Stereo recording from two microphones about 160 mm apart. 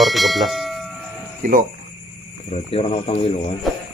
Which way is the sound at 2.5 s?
40° left (ahead or behind).